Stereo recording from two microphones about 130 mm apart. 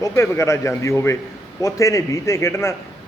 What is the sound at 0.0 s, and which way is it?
A man's voice, 20° left (ahead or behind).